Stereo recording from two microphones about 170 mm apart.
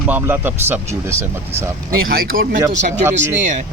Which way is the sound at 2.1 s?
60° right (ahead or behind).